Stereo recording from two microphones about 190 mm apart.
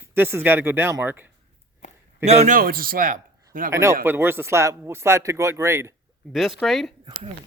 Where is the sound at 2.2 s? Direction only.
35° right (ahead or behind).